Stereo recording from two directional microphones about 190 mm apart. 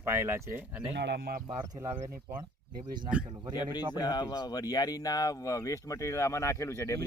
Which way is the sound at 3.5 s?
20° left (ahead or behind).